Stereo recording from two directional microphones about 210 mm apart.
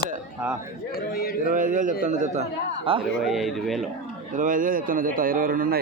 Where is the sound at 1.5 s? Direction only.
40° right (ahead or behind).